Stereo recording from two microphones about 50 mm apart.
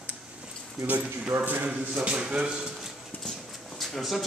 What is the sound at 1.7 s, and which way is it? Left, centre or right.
Speech, centre.